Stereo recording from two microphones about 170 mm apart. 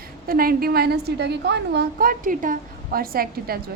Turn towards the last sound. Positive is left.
turn(degrees=-60)  # may be behind; listen again after turning